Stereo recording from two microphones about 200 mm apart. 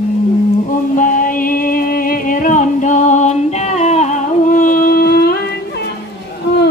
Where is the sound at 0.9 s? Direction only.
45° left (ahead or behind).